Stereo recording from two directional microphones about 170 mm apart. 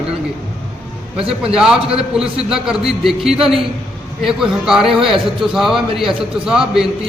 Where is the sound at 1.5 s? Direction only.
5° right (ahead or behind).